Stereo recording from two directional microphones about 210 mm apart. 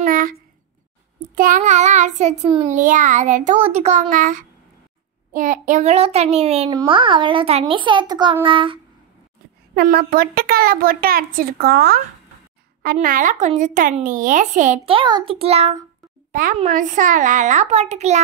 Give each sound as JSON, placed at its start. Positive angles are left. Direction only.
{"t": 0.0, "sound": "a sound", "side_deg": -40}
{"t": 1.3, "sound": "child singing", "side_deg": -40}
{"t": 2.4, "sound": "a child's voice", "side_deg": -30}
{"t": 9.8, "sound": "a child's voice", "side_deg": -45}
{"t": 16.3, "sound": "a sound", "side_deg": -40}
{"t": 16.5, "sound": "speech", "side_deg": -35}